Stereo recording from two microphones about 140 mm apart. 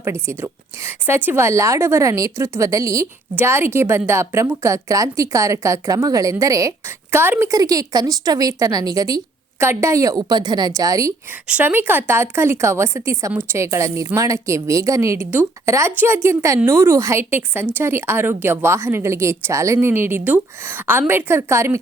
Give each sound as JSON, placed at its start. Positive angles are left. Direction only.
{"t": 0.0, "sound": "a woman's voice", "side_deg": -20}
{"t": 11.4, "sound": "a woman's voice", "side_deg": -10}